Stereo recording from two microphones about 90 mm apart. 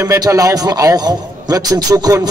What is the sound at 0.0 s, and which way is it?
Speech, 35° right (ahead or behind).